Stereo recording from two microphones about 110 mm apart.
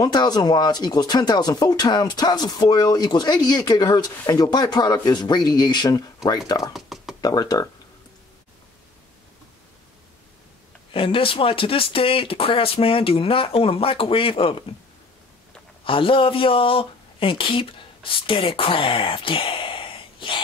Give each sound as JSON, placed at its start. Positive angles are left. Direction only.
{"t": 0.0, "sound": "speech", "side_deg": 40}
{"t": 6.7, "sound": "a sound", "side_deg": 0}
{"t": 7.2, "sound": "speech", "side_deg": 35}
{"t": 10.9, "sound": "speech", "side_deg": 55}
{"t": 15.8, "sound": "speech", "side_deg": 55}